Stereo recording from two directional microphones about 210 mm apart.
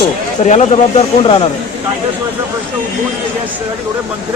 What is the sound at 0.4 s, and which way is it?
Speech, 35° left (ahead or behind).